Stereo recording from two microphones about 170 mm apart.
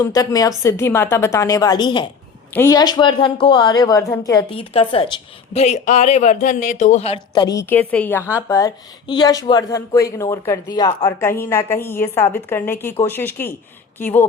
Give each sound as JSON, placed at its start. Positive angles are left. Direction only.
{"t": 0.0, "sound": "a woman's voice", "side_deg": 20}
{"t": 4.5, "sound": "a woman's voice", "side_deg": 35}